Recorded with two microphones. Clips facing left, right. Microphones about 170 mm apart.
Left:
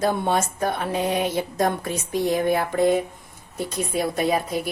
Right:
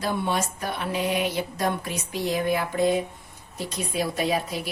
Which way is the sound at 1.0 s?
20° left (ahead or behind).